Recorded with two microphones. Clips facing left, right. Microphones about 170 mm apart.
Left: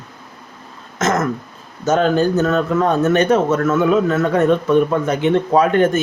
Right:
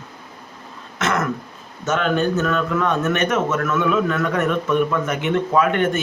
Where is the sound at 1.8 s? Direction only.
35° left (ahead or behind).